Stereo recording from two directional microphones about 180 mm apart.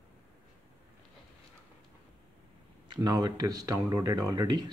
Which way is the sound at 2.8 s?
25° right (ahead or behind).